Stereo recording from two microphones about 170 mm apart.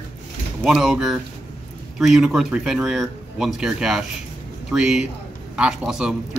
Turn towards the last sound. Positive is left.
turn(degrees=-5)  # may be behind; listen again after turning